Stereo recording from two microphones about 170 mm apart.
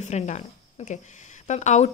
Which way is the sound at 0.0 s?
45° left (ahead or behind).